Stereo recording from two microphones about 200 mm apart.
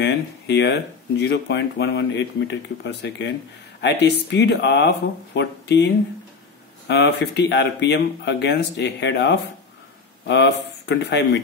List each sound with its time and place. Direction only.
0.0 s speech: 60° left (ahead or behind)